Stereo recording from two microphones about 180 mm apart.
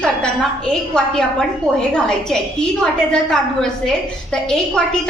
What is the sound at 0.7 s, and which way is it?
A woman's voice, 5° left (ahead or behind).